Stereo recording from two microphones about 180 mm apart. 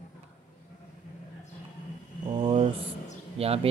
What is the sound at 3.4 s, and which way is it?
Speech, 35° right (ahead or behind).